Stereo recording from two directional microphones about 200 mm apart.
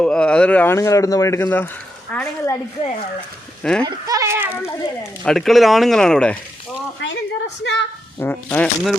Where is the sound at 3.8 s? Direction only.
15° right (ahead or behind).